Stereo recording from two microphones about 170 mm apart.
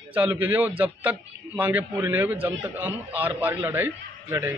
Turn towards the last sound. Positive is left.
turn(degrees=-10)  # may be behind; listen again after turning